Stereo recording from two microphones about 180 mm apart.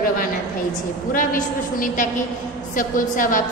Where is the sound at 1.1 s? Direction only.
50° left (ahead or behind).